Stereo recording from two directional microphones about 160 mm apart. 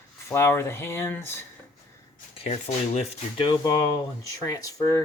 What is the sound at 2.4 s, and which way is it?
Speech, 40° left (ahead or behind).